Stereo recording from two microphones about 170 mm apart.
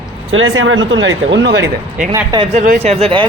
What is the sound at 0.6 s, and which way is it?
Speech, 90° right.